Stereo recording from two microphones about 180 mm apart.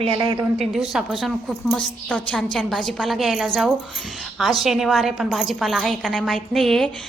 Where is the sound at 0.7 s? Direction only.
5° right (ahead or behind).